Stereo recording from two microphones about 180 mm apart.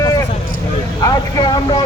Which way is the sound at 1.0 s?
20° left (ahead or behind).